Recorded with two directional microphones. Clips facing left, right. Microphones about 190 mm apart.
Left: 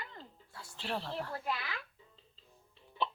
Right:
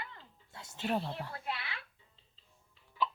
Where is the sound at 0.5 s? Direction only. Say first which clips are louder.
Right 2 dB; 25° right (ahead or behind).